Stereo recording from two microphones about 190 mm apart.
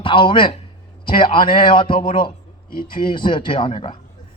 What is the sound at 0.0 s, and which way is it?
A man's voice, 25° left (ahead or behind).